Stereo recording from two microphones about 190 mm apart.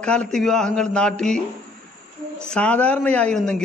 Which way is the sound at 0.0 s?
5° left (ahead or behind).